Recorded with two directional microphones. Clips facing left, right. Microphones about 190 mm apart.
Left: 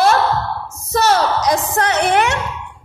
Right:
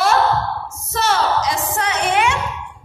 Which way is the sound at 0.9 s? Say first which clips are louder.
Left 3 dB; 40° left (ahead or behind).